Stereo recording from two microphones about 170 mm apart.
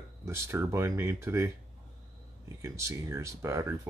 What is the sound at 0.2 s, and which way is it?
Speech, 15° right (ahead or behind).